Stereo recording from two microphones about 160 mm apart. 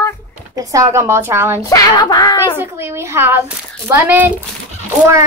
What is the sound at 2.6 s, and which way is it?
A woman's voice, 15° right (ahead or behind).